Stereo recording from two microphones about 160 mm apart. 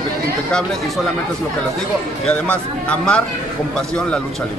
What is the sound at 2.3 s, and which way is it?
A man's voice, 5° left (ahead or behind).